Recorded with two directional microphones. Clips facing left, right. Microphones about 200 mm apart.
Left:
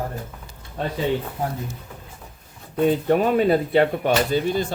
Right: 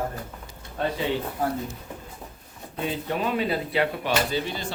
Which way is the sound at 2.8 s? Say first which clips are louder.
Left 9 dB; 50° left (ahead or behind).